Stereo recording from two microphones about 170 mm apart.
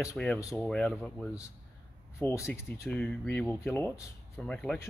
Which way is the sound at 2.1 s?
15° left (ahead or behind).